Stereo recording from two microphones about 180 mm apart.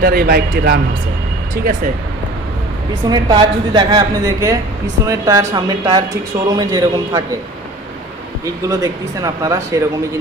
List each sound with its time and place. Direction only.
0.0 s a man's voice: 55° right (ahead or behind)
3.1 s a woman's voice: 25° right (ahead or behind)
8.7 s a woman's voice: 20° right (ahead or behind)